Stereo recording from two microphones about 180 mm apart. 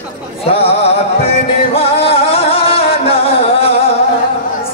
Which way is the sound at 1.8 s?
35° left (ahead or behind).